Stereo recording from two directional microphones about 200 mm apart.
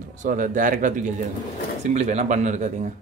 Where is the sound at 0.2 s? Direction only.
40° right (ahead or behind).